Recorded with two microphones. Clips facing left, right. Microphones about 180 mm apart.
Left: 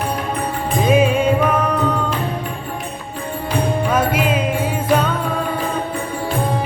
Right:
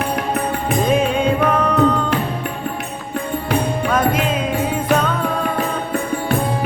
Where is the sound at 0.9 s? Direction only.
5° left (ahead or behind).